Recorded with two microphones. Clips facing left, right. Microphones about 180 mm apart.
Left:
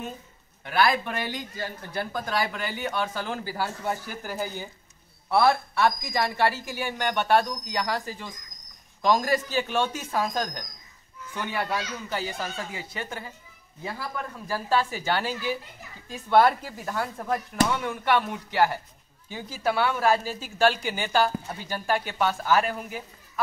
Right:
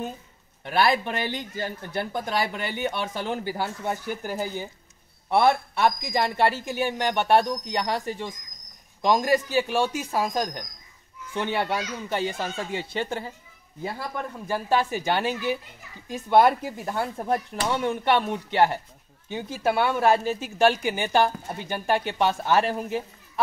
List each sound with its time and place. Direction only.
0.7 s speech: 25° right (ahead or behind)
11.3 s speech: 25° right (ahead or behind)